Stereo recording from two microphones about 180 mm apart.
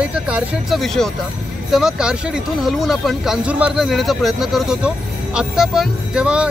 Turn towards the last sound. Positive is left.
turn(degrees=-5)  # may be behind; listen again after turning